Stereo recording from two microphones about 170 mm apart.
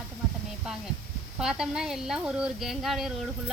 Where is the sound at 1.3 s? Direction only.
5° right (ahead or behind).